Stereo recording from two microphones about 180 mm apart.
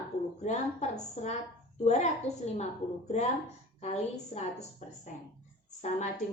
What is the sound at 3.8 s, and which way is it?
A woman's voice, 40° left (ahead or behind).